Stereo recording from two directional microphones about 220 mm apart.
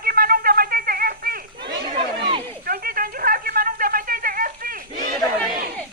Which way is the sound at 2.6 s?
40° right (ahead or behind).